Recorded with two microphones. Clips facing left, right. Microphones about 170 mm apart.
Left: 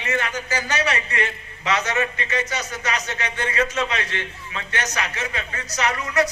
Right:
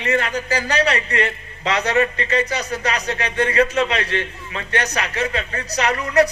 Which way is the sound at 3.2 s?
60° right (ahead or behind).